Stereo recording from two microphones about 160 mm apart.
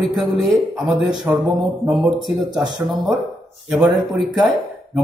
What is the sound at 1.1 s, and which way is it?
Speech, 20° right (ahead or behind).